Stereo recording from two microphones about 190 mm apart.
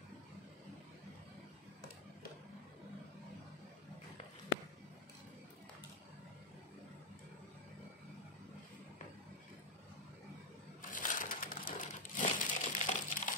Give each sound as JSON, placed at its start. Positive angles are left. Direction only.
{"t": 10.8, "sound": "crumpling", "side_deg": 45}